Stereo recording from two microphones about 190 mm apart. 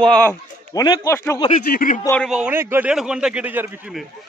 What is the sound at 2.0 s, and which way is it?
Speech, 5° left (ahead or behind).